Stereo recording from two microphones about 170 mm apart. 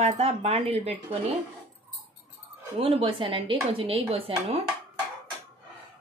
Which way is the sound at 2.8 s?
30° right (ahead or behind).